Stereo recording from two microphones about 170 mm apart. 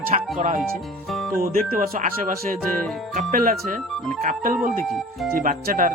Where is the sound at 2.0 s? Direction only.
50° right (ahead or behind).